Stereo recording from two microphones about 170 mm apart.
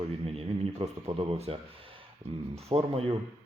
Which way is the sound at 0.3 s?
35° right (ahead or behind).